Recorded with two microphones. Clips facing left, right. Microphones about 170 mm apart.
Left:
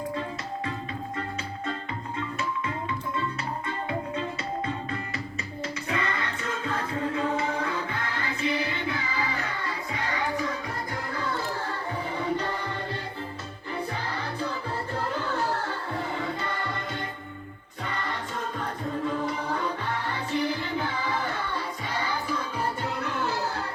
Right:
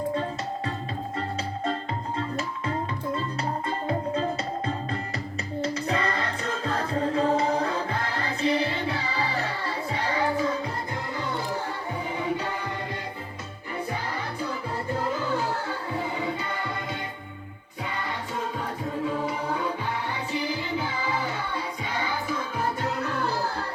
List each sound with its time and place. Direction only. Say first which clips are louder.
0.1 s music: right 4 dB; 35° right (ahead or behind)
2.1 s tabla: left 2 dB; 35° right (ahead or behind)
3.7 s music: right 3 dB; 35° right (ahead or behind)
19.0 s music: right 1 dB; 5° right (ahead or behind)